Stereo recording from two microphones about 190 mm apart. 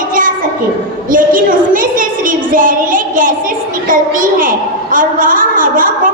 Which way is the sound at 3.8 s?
45° right (ahead or behind).